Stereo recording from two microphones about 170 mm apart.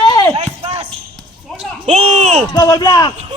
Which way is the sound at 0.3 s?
35° right (ahead or behind).